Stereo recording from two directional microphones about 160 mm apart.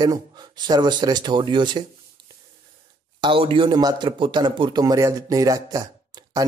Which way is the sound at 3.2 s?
35° right (ahead or behind).